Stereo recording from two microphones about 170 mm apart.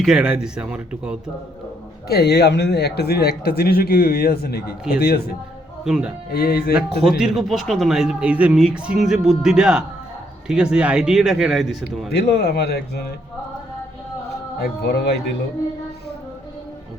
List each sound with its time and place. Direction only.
0.0 s speech: 5° right (ahead or behind)
2.0 s speech: 70° left (ahead or behind)
5.8 s speech: 5° right (ahead or behind)
6.3 s speech: 65° left (ahead or behind)
7.2 s speech: centre (ahead or behind)
12.3 s speech: 75° left (ahead or behind)
14.6 s speech: 75° left (ahead or behind)